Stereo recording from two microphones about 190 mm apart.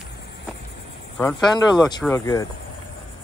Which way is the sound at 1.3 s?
20° left (ahead or behind).